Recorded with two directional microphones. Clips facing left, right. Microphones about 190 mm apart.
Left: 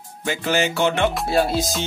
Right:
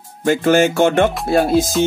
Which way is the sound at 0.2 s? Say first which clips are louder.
Right 9 dB; 50° right (ahead or behind).